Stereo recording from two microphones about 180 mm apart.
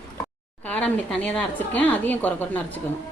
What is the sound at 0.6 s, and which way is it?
A woman's voice, 5° left (ahead or behind).